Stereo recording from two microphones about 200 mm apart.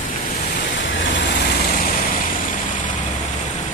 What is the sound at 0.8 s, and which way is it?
Vehicle, 65° left (ahead or behind).